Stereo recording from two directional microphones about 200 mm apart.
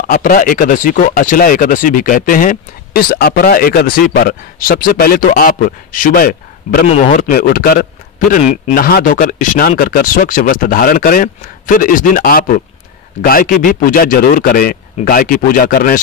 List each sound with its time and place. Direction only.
0.1 s speech: 45° left (ahead or behind)